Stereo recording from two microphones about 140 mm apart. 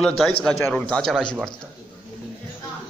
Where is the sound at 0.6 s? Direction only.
15° left (ahead or behind).